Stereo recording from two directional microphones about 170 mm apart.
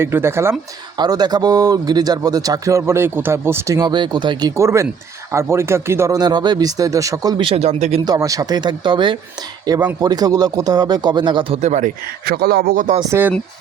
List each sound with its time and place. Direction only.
0.0 s speech: 15° right (ahead or behind); by 8.0 s 40° right (ahead or behind)
8.0 s speech: 20° right (ahead or behind); by 11.9 s 45° right (ahead or behind)
12.2 s speech: 65° right (ahead or behind)
13.0 s speech: 15° right (ahead or behind)